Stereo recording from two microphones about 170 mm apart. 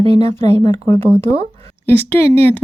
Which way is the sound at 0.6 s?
20° left (ahead or behind).